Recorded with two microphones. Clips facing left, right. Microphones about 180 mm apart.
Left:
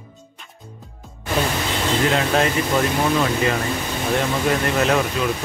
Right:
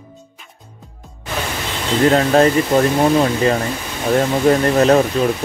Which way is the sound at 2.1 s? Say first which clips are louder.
Right 10 dB; 40° right (ahead or behind).